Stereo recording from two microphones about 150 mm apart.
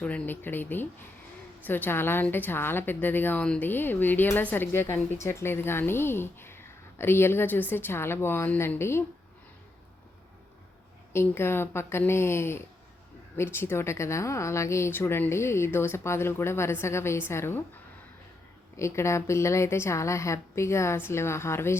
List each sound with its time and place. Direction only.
0.0 s a woman's voice: 10° left (ahead or behind)
11.1 s a woman's voice: 15° left (ahead or behind)
18.8 s a woman's voice: 20° left (ahead or behind)